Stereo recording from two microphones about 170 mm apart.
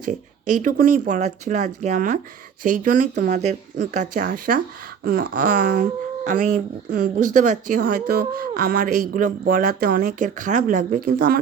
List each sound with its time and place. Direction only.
0.0 s speech: 50° right (ahead or behind)